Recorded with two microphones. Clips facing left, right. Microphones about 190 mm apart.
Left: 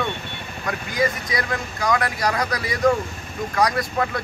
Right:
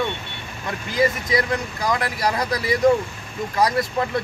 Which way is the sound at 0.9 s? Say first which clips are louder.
Right 4 dB; 25° right (ahead or behind).